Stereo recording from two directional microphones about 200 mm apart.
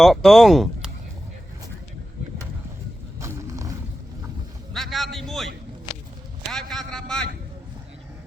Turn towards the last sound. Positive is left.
turn(degrees=0)  # may be behind; listen again after turning